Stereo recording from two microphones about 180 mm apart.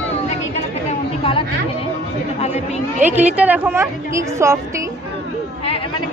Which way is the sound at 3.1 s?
10° right (ahead or behind).